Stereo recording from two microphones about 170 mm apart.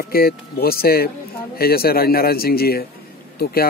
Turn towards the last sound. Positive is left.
turn(degrees=65)  # may be behind; listen again after turning